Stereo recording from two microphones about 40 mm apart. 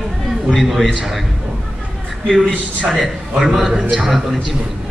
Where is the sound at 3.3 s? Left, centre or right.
Centre.